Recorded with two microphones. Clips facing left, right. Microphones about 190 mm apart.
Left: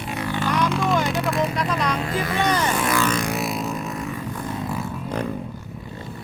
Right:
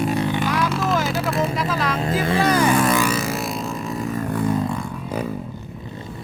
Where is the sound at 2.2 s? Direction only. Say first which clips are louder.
Right 6 dB; 30° right (ahead or behind).